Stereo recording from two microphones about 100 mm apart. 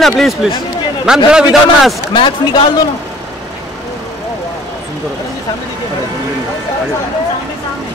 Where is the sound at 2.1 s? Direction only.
55° left (ahead or behind).